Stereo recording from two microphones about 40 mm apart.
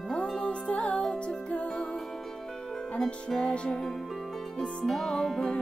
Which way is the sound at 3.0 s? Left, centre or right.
Centre.